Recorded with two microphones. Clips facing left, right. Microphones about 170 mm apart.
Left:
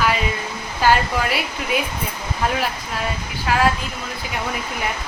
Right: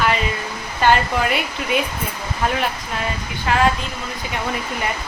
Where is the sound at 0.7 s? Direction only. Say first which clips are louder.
Right 1 dB; 5° left (ahead or behind).